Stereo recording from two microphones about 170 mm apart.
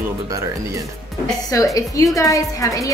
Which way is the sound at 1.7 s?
20° left (ahead or behind).